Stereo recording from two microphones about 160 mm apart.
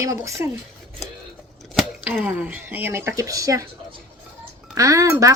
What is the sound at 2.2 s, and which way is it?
Speech, 10° right (ahead or behind).